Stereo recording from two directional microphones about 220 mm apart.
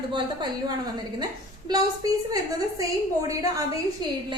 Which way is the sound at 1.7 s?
20° right (ahead or behind).